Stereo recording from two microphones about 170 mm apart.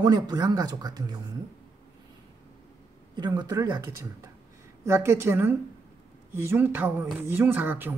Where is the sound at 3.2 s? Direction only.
25° right (ahead or behind).